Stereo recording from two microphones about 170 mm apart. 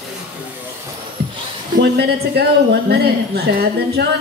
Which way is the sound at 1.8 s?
70° right (ahead or behind).